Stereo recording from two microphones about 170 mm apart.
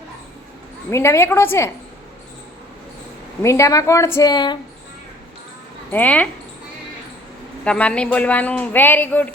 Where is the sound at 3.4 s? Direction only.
15° left (ahead or behind).